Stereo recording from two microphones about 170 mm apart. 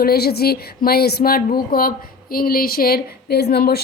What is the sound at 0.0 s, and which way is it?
A woman's voice, 65° left (ahead or behind).